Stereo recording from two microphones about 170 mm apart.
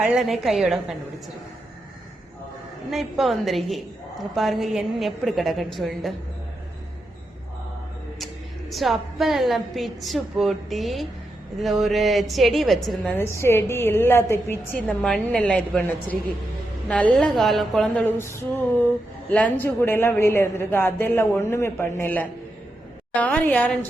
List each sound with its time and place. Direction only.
0.0 s a woman's voice: 5° right (ahead or behind)
2.9 s a woman's voice: centre (ahead or behind)
8.7 s a woman's voice: centre (ahead or behind)
13.1 s a woman's voice: 15° left (ahead or behind)
18.2 s a woman's voice: 15° left (ahead or behind)